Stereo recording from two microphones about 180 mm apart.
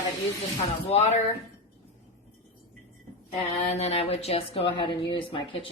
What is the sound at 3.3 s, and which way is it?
A woman's voice, 35° left (ahead or behind).